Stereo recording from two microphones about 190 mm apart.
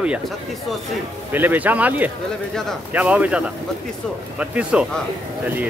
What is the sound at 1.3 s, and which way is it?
Speech, 10° right (ahead or behind).